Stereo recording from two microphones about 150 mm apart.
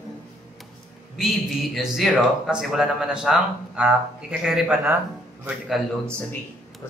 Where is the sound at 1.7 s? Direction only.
Centre (ahead or behind).